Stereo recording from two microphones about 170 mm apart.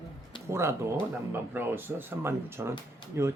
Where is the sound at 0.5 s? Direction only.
15° right (ahead or behind).